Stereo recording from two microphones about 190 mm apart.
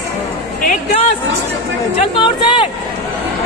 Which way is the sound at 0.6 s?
40° left (ahead or behind).